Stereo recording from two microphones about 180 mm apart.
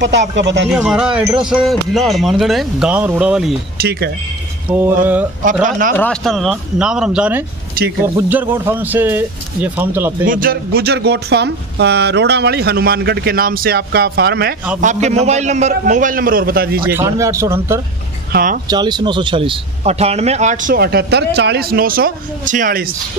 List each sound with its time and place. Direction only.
0.0 s speech: 75° right (ahead or behind)
0.7 s speech: 5° right (ahead or behind)
3.7 s speech: 60° right (ahead or behind)
4.6 s speech: 10° right (ahead or behind)
5.9 s speech: 5° left (ahead or behind); by 10.1 s 10° right (ahead or behind)
10.2 s speech: 50° right (ahead or behind)
14.8 s a man's voice: 40° right (ahead or behind)
16.9 s speech: 15° right (ahead or behind)
18.3 s speech: 50° right (ahead or behind)
18.7 s speech: 25° right (ahead or behind); by 22.8 s 50° right (ahead or behind)